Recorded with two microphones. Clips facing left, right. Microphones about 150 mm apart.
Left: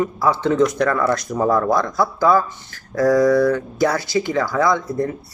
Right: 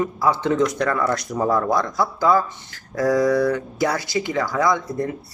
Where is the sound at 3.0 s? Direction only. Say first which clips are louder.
Left 3 dB; 45° left (ahead or behind).